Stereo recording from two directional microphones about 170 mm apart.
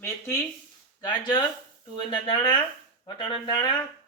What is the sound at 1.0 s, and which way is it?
Speech, 25° left (ahead or behind).